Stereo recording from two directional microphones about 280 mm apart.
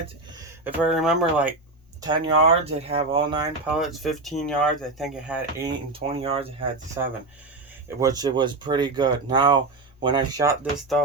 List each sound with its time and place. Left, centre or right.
0.6 s speech: centre
2.0 s speech: centre
3.7 s speech: centre
8.0 s speech: centre